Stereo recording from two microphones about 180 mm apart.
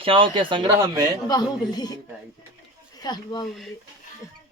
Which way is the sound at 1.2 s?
20° left (ahead or behind).